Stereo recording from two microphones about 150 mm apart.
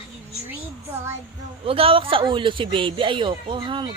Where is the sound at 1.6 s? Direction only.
40° right (ahead or behind).